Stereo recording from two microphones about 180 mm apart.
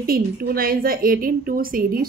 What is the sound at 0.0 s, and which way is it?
A woman's voice, 55° right (ahead or behind).